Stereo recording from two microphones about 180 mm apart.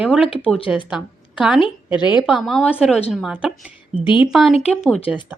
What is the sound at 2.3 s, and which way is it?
A woman's voice, centre (ahead or behind).